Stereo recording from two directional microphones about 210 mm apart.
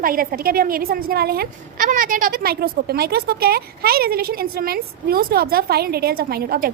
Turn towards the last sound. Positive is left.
turn(degrees=-45)  # may be behind; listen again after turning